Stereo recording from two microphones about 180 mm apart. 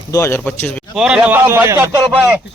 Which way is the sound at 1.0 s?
5° right (ahead or behind).